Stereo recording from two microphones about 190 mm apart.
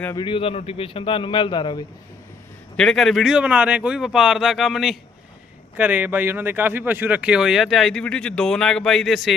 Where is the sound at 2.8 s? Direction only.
Centre (ahead or behind).